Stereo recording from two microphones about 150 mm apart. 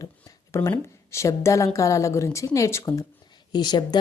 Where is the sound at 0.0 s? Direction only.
20° left (ahead or behind).